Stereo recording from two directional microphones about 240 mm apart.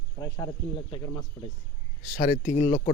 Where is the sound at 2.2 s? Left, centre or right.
Left.